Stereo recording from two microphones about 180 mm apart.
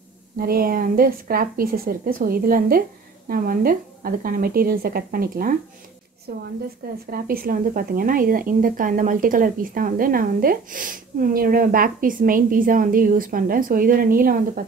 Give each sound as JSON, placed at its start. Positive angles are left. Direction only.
{"t": 0.4, "sound": "a woman's voice", "side_deg": -55}